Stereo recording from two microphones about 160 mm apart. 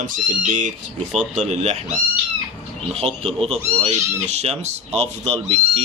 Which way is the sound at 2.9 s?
40° right (ahead or behind).